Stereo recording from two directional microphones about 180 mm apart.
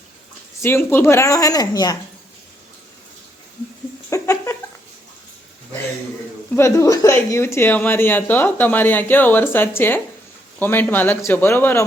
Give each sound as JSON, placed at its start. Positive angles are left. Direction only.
{"t": 0.6, "sound": "speech", "side_deg": 10}
{"t": 4.1, "sound": "a sound", "side_deg": 15}
{"t": 6.5, "sound": "speech", "side_deg": 15}